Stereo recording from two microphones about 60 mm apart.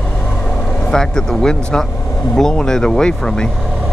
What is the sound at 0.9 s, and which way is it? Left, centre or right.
Speech, centre.